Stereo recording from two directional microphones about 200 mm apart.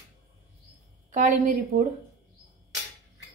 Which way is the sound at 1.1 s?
40° right (ahead or behind).